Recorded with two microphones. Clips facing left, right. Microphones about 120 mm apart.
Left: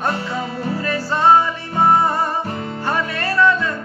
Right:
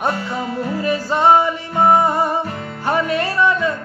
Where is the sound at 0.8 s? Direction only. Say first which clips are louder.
Right 1 dB; 15° right (ahead or behind).